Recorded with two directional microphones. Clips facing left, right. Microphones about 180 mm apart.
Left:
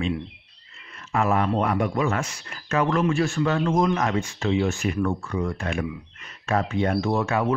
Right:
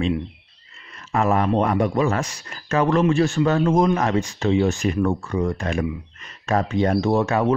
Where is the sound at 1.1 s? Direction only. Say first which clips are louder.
Right 3 dB; 40° right (ahead or behind).